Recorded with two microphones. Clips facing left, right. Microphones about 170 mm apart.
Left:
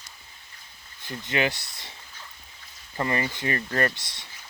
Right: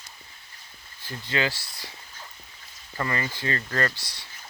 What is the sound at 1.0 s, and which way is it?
Speech, 20° left (ahead or behind).